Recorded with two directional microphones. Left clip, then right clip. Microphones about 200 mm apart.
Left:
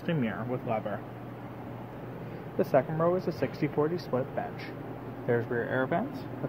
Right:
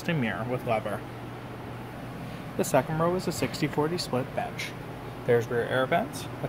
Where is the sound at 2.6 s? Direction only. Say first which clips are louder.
Right 1 dB; 5° right (ahead or behind).